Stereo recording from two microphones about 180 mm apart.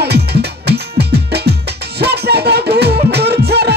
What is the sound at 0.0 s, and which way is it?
Music, 65° right (ahead or behind).